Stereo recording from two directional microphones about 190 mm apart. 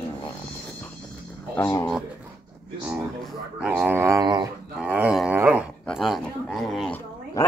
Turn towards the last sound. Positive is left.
turn(degrees=15)  # may be behind; listen again after turning